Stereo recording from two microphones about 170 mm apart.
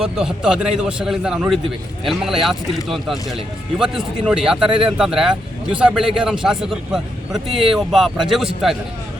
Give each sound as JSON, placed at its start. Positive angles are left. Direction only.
{"t": 0.0, "sound": "a man's voice", "side_deg": -5}